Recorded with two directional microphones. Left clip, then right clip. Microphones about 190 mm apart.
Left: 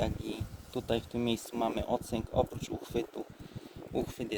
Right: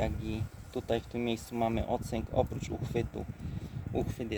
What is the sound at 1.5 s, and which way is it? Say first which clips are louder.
Speech: right 3 dB; 35° left (ahead or behind).